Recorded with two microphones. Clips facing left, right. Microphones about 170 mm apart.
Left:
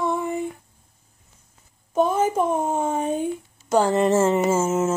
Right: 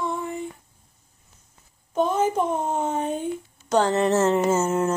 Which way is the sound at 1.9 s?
10° left (ahead or behind).